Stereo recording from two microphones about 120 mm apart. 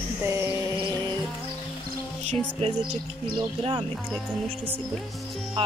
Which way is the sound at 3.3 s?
40° right (ahead or behind).